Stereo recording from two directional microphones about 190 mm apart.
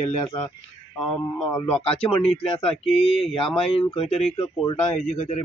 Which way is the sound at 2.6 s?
Centre (ahead or behind).